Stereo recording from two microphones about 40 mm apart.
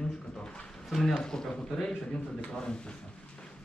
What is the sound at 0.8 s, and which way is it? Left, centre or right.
A man's voice, centre.